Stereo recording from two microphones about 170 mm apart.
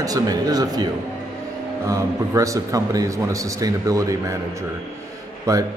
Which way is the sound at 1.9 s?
20° right (ahead or behind).